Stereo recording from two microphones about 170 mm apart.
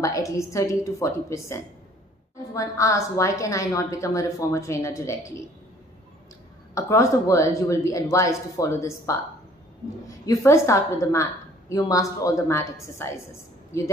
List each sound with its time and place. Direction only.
0.0 s a woman's voice: 20° left (ahead or behind)
6.7 s a woman's voice: 15° left (ahead or behind)